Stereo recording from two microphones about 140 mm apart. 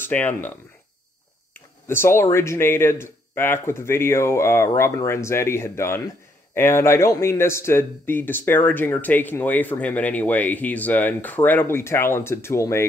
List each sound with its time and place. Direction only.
0.0 s speech: 10° left (ahead or behind)
1.9 s a man's voice: 15° left (ahead or behind)